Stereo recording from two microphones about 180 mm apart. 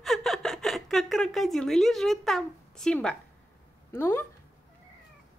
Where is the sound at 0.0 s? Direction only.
Centre (ahead or behind).